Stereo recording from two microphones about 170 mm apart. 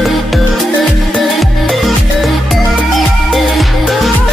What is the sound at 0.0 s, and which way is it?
Music, centre (ahead or behind).